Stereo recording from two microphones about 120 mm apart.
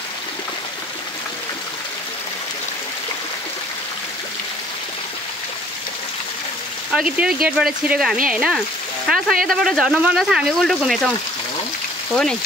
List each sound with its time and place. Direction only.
6.9 s speech: 10° right (ahead or behind)
12.1 s speech: 5° left (ahead or behind)